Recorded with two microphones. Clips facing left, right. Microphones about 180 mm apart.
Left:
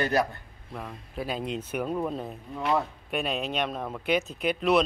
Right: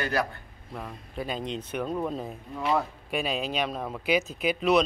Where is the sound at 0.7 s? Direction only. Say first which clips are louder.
Even; centre (ahead or behind).